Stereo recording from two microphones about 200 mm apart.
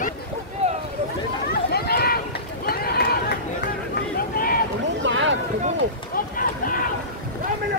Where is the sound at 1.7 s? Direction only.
50° left (ahead or behind).